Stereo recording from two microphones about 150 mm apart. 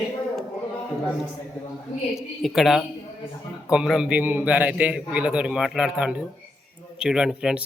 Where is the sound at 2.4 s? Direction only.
Centre (ahead or behind).